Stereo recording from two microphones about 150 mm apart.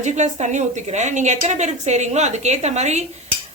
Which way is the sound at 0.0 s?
50° right (ahead or behind).